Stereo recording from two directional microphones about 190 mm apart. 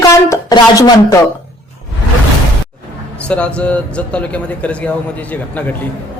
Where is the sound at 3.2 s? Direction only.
5° left (ahead or behind).